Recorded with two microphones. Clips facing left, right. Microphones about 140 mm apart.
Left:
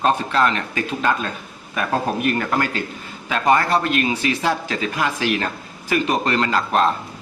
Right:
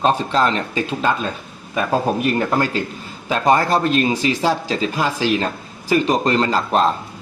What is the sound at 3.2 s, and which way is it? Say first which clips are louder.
A man's voice: right 2 dB; 30° right (ahead or behind).